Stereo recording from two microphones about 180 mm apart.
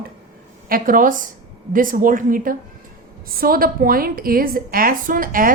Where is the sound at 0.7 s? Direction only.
50° right (ahead or behind).